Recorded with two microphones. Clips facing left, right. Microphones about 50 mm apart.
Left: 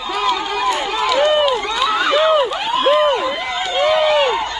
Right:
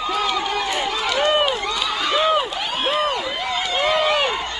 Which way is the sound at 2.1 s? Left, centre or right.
Centre.